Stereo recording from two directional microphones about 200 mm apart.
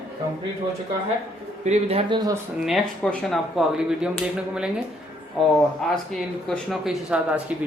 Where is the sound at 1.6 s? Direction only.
30° right (ahead or behind).